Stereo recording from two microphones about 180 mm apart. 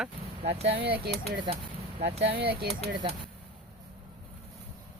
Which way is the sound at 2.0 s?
35° right (ahead or behind).